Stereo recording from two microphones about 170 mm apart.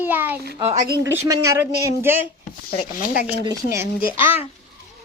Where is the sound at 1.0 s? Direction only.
20° right (ahead or behind).